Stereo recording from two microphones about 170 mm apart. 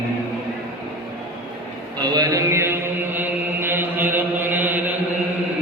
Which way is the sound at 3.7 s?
10° right (ahead or behind).